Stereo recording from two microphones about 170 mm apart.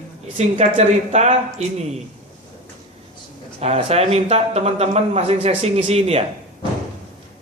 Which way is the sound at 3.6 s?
40° right (ahead or behind).